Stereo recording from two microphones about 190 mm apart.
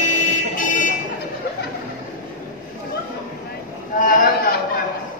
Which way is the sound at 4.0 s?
45° left (ahead or behind).